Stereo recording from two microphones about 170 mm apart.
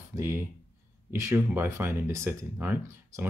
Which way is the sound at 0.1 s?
15° right (ahead or behind).